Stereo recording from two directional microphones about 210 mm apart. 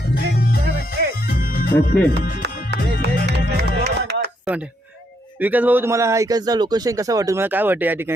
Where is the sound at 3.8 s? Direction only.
50° right (ahead or behind).